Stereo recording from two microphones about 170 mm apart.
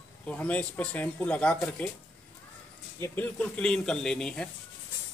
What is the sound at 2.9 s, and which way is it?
Speech, 15° left (ahead or behind).